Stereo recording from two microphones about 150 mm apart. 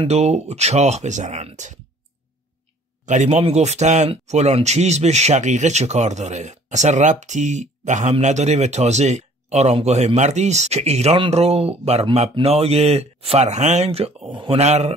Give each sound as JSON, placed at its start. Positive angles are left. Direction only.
{"t": 0.1, "sound": "speech", "side_deg": -45}
{"t": 3.1, "sound": "speech", "side_deg": -50}